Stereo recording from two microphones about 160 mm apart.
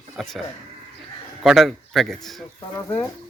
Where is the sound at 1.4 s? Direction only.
Centre (ahead or behind).